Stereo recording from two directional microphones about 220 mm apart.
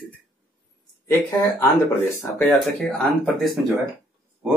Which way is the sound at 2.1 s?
10° left (ahead or behind).